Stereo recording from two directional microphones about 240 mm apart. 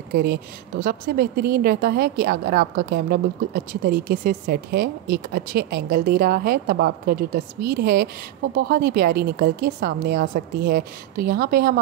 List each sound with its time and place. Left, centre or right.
0.1 s a woman's voice: right